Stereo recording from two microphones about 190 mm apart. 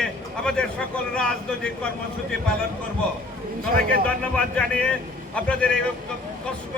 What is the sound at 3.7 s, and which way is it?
Speech, 50° right (ahead or behind).